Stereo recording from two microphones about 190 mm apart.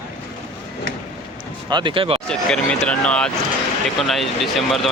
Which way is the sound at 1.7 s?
25° right (ahead or behind).